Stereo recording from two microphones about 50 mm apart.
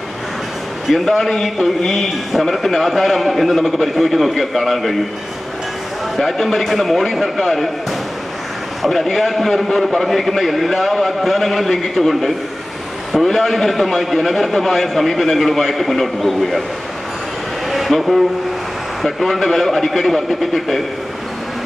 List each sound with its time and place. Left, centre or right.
0.8 s a man's voice: centre
6.1 s a man's voice: centre
8.8 s a man's voice: centre
17.6 s a sound: centre
19.0 s a man's voice: centre